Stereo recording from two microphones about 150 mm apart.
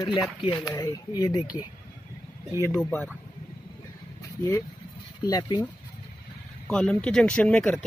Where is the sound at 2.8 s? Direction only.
5° left (ahead or behind).